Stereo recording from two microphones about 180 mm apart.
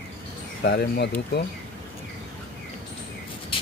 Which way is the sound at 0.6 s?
70° left (ahead or behind).